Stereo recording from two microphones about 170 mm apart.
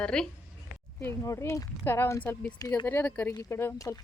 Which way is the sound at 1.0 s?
15° left (ahead or behind).